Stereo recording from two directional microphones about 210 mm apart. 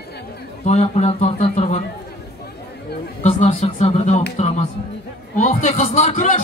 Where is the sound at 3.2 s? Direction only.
30° left (ahead or behind).